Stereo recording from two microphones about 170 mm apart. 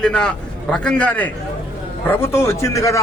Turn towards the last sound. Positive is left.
turn(degrees=20)  # may be behind; listen again after turning